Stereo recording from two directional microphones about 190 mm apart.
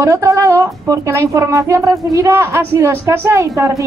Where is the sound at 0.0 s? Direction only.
15° right (ahead or behind).